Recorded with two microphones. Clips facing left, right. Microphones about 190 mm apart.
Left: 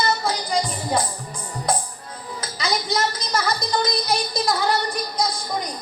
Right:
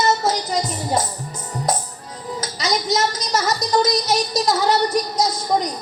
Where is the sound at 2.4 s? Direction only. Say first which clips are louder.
Right 2 dB; 40° right (ahead or behind).